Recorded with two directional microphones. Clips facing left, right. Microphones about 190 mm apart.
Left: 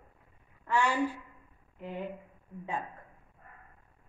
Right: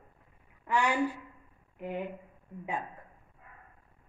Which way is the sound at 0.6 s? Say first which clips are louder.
Even; 15° right (ahead or behind).